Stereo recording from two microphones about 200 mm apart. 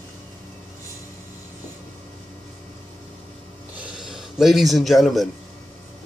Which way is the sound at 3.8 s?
Centre (ahead or behind).